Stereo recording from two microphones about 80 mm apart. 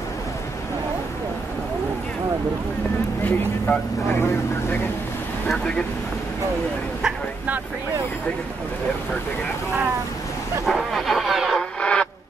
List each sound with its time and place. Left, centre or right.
3.3 s speech: centre
10.6 s music: centre
11.8 s music: centre